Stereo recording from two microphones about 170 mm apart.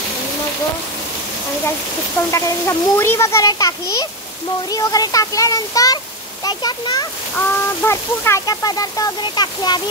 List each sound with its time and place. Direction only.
2.3 s a child's voice: 15° left (ahead or behind)